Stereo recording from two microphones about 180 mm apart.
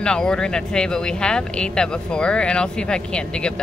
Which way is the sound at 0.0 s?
5° left (ahead or behind).